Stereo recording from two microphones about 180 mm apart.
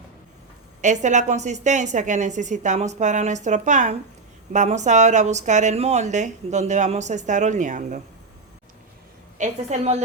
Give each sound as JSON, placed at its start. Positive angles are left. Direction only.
{"t": 0.8, "sound": "speech", "side_deg": -40}
{"t": 9.4, "sound": "speech", "side_deg": -40}